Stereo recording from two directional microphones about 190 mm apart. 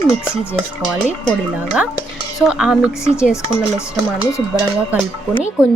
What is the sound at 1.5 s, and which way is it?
A woman's voice, 10° right (ahead or behind).